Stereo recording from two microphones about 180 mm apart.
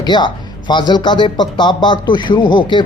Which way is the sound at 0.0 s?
25° left (ahead or behind).